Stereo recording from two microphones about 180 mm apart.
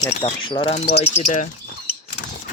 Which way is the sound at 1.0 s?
40° left (ahead or behind).